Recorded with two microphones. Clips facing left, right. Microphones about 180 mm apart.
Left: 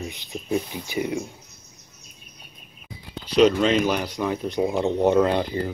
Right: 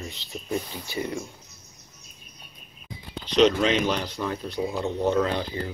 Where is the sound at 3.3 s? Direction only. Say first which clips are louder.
Left 2 dB; 5° left (ahead or behind).